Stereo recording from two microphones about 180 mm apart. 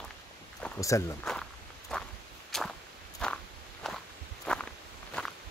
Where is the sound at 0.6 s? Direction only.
15° left (ahead or behind).